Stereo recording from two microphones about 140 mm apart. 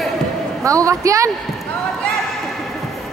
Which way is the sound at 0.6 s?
25° right (ahead or behind).